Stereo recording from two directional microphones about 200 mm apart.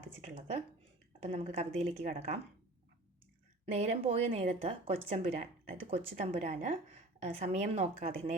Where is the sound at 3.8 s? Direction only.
30° right (ahead or behind).